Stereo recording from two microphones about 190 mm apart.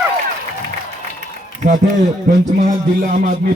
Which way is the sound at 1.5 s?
45° right (ahead or behind).